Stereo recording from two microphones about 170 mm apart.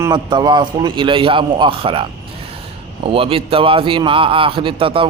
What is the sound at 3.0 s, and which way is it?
A man's voice, 30° right (ahead or behind).